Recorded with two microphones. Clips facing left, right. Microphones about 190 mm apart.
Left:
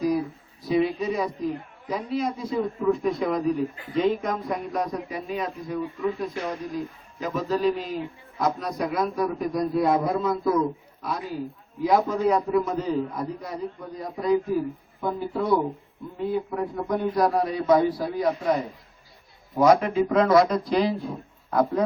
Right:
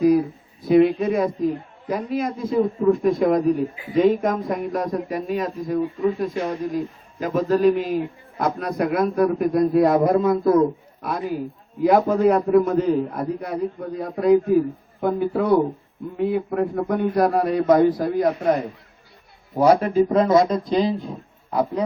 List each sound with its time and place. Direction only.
0.6 s a man's voice: 60° right (ahead or behind)
19.5 s speech: 35° right (ahead or behind)
21.5 s a man's voice: 10° right (ahead or behind)